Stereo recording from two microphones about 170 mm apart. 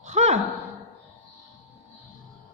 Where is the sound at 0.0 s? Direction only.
40° right (ahead or behind).